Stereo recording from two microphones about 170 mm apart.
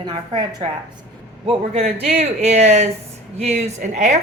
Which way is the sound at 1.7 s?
40° right (ahead or behind).